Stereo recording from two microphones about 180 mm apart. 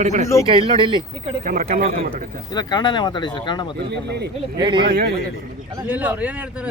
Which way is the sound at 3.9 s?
70° right (ahead or behind).